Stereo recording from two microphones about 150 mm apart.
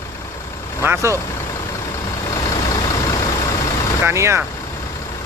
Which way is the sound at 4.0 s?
20° right (ahead or behind).